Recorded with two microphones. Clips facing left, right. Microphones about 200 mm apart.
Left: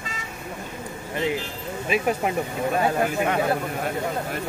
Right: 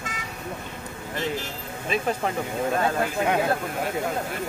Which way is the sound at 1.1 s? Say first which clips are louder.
Left 3 dB; 10° left (ahead or behind).